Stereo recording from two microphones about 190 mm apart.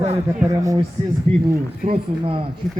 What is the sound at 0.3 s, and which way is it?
Speech, 15° right (ahead or behind).